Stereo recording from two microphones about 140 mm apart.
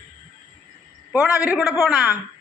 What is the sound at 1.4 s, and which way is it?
Speech, 5° right (ahead or behind).